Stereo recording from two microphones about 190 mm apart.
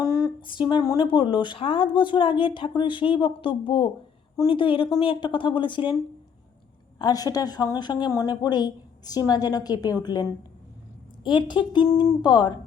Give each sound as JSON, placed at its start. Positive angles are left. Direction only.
{"t": 0.0, "sound": "a sound", "side_deg": 20}
{"t": 0.7, "sound": "a woman's voice", "side_deg": 20}
{"t": 7.0, "sound": "a woman's voice", "side_deg": 20}